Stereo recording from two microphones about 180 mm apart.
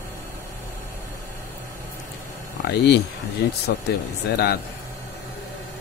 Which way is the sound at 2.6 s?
70° left (ahead or behind).